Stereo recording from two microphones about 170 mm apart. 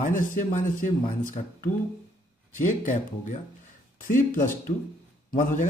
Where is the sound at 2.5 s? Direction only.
45° left (ahead or behind).